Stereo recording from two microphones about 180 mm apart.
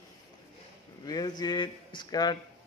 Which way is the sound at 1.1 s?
25° left (ahead or behind).